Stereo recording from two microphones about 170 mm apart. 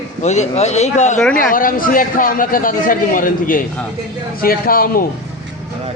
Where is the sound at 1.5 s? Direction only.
55° left (ahead or behind).